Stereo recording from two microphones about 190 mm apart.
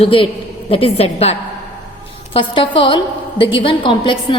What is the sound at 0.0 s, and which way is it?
A woman's voice, 30° left (ahead or behind).